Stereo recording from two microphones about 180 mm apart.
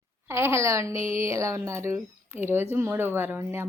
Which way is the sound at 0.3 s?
15° right (ahead or behind).